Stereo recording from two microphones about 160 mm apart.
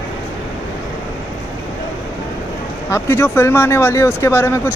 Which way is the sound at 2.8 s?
15° left (ahead or behind).